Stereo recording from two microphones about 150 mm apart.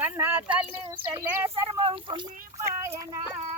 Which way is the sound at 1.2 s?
15° right (ahead or behind).